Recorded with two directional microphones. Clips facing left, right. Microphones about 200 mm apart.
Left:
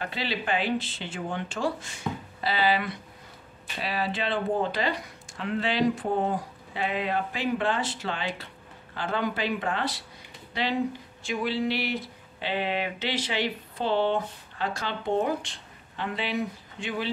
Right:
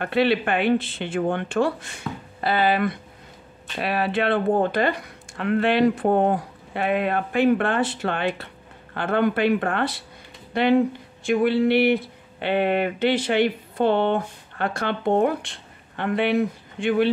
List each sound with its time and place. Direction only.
0.0 s speech: 60° right (ahead or behind)